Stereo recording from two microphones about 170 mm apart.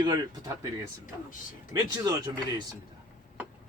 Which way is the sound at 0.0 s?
25° right (ahead or behind).